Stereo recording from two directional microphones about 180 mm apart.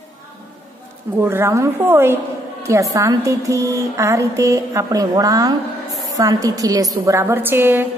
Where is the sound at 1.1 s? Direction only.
15° right (ahead or behind).